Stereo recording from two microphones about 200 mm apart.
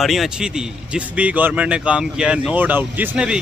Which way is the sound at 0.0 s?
Centre (ahead or behind).